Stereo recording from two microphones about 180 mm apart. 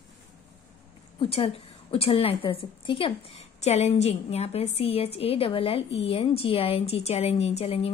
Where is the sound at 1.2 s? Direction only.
30° left (ahead or behind).